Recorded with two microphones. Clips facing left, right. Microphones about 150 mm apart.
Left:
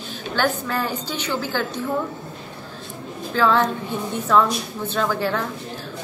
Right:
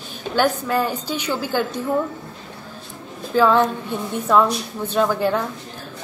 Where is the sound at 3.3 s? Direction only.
15° right (ahead or behind).